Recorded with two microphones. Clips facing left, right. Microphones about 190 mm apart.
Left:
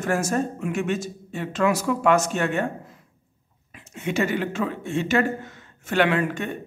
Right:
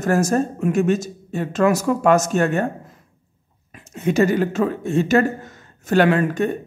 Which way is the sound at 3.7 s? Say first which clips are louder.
Right 7 dB; 40° right (ahead or behind).